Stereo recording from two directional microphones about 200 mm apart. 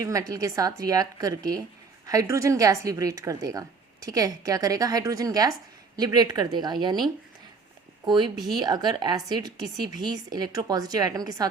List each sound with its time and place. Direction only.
0.0 s a woman's voice: 15° right (ahead or behind)
8.0 s a woman's voice: 20° right (ahead or behind)